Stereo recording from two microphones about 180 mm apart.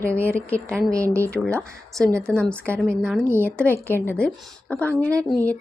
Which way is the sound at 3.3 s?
10° right (ahead or behind).